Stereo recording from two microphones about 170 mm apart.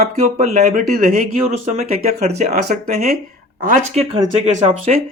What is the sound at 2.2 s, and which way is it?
Speech, 40° right (ahead or behind).